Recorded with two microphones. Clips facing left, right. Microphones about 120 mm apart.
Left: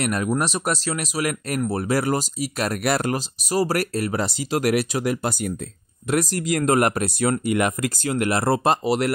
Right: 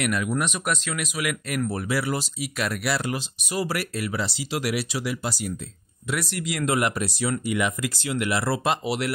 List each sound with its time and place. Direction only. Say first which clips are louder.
0.0 s speech: left 3 dB; 40° left (ahead or behind)